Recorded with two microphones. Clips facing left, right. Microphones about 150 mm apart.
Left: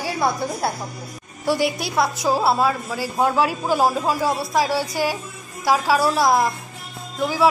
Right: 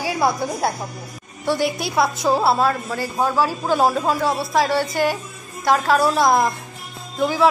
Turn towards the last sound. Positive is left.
turn(degrees=0)  # may be behind; listen again after turning